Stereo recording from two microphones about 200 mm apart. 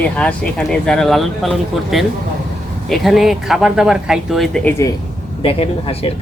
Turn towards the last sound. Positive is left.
turn(degrees=30)  # may be behind; listen again after turning